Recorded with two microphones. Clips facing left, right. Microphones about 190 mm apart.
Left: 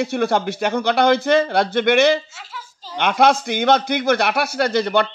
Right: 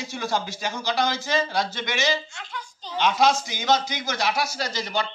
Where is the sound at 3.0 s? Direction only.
60° left (ahead or behind).